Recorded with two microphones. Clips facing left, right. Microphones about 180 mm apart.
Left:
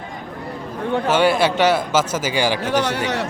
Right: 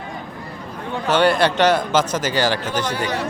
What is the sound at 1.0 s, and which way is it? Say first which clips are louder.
A man's voice: right 1 dB; 5° left (ahead or behind).